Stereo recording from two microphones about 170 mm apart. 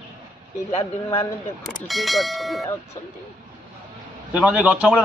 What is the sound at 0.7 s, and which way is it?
Speech, 35° left (ahead or behind).